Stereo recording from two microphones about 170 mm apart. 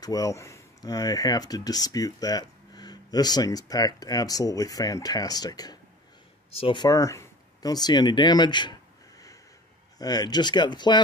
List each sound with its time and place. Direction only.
0.0 s speech: 20° left (ahead or behind)
9.9 s speech: 25° left (ahead or behind)